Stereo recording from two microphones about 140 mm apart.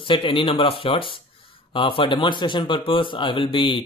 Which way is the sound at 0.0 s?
40° left (ahead or behind).